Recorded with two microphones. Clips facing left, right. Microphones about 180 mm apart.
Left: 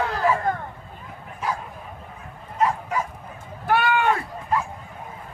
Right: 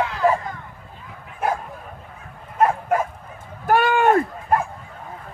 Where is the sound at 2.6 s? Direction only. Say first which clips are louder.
Right 4 dB; 55° right (ahead or behind).